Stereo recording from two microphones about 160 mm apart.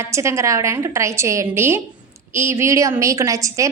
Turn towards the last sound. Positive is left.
turn(degrees=-20)  # may be behind; listen again after turning